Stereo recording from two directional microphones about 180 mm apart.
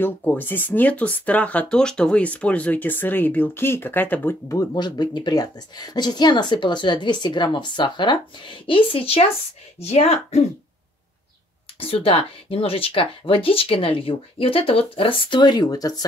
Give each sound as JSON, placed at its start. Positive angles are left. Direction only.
{"t": 0.0, "sound": "speech", "side_deg": 10}
{"t": 11.8, "sound": "speech", "side_deg": 30}